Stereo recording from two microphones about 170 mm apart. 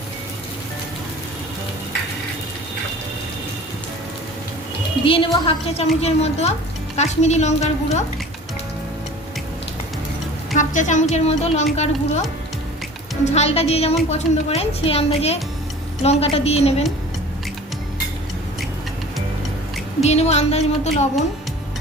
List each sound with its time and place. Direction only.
5.0 s a woman's voice: 30° left (ahead or behind)
10.5 s a woman's voice: 45° left (ahead or behind)
13.3 s a woman's voice: 40° left (ahead or behind)
20.0 s a woman's voice: 40° left (ahead or behind)